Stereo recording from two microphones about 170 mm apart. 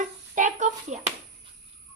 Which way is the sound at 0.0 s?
50° right (ahead or behind).